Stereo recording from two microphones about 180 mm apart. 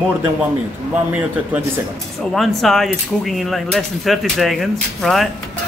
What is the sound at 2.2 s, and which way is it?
Speech, centre (ahead or behind).